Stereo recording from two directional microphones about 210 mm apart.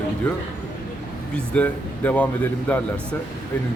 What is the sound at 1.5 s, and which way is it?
Speech, 5° left (ahead or behind).